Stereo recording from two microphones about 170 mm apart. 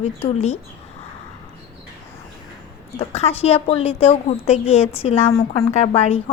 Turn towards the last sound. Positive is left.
turn(degrees=40)  # may be behind; listen again after turning